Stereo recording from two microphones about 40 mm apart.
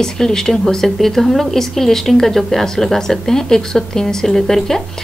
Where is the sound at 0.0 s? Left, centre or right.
Centre.